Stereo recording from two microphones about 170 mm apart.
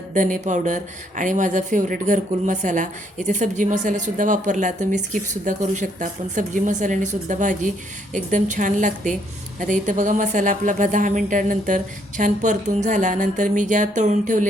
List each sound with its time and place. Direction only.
0.1 s speech: 50° right (ahead or behind)